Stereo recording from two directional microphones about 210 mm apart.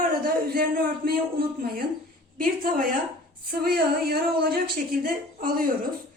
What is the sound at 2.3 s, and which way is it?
A woman's voice, 45° right (ahead or behind).